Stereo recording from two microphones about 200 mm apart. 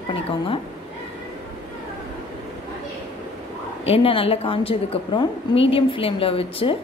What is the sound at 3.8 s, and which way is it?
A woman's voice, 30° left (ahead or behind).